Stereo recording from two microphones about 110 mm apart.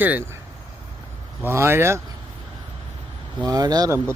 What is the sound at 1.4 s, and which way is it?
Speech, 25° right (ahead or behind).